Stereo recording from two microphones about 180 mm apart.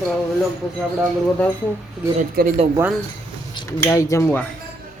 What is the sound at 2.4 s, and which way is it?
Speech, 55° right (ahead or behind).